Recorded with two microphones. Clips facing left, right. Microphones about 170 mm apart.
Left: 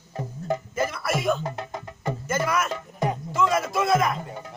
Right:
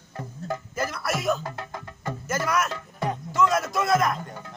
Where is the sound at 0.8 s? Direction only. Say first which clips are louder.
Even; centre (ahead or behind).